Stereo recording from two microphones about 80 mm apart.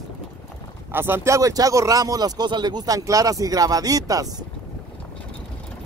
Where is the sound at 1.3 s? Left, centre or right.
Right.